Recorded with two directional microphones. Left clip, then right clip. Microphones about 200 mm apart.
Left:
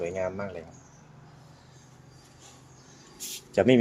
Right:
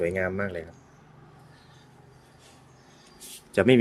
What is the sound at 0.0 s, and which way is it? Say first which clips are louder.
Speech: right 4 dB; 35° right (ahead or behind).